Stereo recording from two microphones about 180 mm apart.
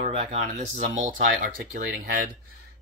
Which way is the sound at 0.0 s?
35° right (ahead or behind).